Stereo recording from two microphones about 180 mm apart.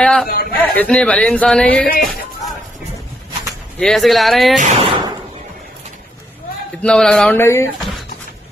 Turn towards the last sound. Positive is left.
turn(degrees=15)  # may be behind; listen again after turning